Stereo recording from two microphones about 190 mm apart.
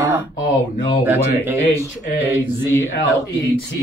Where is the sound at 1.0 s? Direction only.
10° right (ahead or behind).